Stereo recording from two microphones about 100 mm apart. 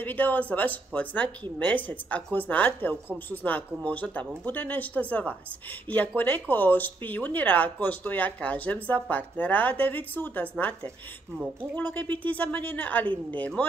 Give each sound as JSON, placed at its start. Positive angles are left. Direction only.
{"t": 0.0, "sound": "speech", "side_deg": 15}
{"t": 11.3, "sound": "a woman's voice", "side_deg": -15}
{"t": 11.7, "sound": "speech", "side_deg": 15}